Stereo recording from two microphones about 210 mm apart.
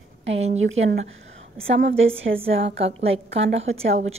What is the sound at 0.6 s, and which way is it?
Speech, 70° right (ahead or behind).